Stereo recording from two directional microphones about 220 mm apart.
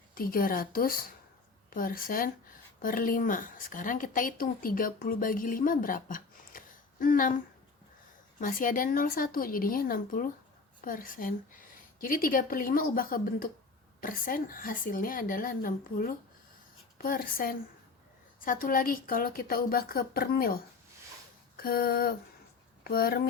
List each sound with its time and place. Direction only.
0.1 s a woman's voice: 40° left (ahead or behind)
21.5 s a sound: 40° left (ahead or behind)
22.8 s speech: 45° left (ahead or behind)